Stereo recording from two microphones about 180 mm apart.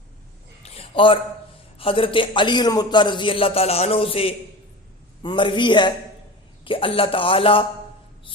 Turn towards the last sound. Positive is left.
turn(degrees=30)  # may be behind; listen again after turning